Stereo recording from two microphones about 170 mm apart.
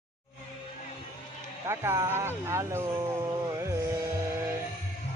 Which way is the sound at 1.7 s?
15° right (ahead or behind).